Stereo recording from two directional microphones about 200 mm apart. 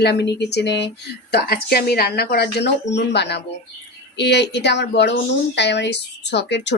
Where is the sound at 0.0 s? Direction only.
60° left (ahead or behind).